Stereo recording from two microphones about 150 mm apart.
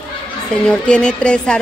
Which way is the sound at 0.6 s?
5° left (ahead or behind).